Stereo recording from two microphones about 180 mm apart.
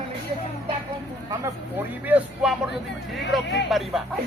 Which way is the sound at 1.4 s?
10° right (ahead or behind).